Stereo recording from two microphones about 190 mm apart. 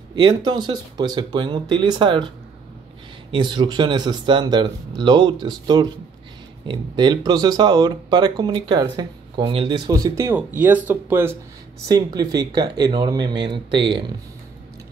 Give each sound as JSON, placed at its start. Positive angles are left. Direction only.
{"t": 0.1, "sound": "speech", "side_deg": -25}